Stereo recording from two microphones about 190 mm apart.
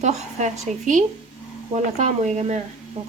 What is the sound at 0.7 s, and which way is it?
A woman's voice, 40° right (ahead or behind).